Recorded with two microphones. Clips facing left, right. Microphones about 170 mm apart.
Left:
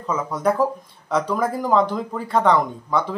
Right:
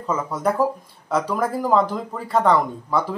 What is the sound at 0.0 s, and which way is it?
Speech, 5° right (ahead or behind).